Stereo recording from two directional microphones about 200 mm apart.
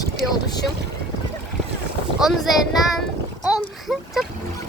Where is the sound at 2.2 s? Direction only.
Centre (ahead or behind).